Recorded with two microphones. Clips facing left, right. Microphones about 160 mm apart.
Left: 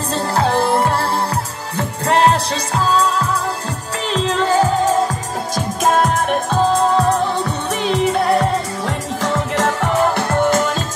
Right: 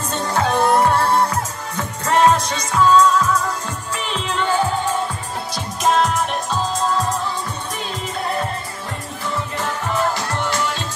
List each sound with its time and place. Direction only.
0.3 s music: 30° left (ahead or behind)
5.9 s music: 50° left (ahead or behind)
7.9 s music: 75° left (ahead or behind)
10.4 s music: 50° left (ahead or behind)